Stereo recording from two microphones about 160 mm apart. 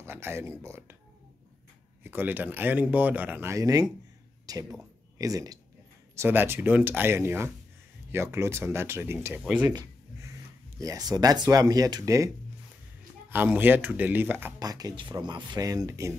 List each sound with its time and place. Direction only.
0.0 s speech: 15° right (ahead or behind)
2.0 s speech: 10° right (ahead or behind)
9.7 s a sound: 20° right (ahead or behind)
10.8 s speech: 20° right (ahead or behind)
13.3 s speech: 10° right (ahead or behind)
14.6 s speech: 25° right (ahead or behind)